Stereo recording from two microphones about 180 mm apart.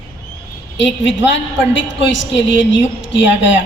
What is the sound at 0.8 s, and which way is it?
A woman's voice, 90° left.